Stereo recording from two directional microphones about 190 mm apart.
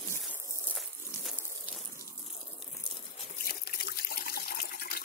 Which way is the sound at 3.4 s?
55° left (ahead or behind).